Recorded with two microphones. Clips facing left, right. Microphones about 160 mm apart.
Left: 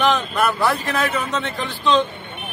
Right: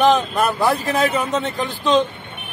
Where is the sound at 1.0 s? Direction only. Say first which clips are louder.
Right 3 dB; 45° right (ahead or behind).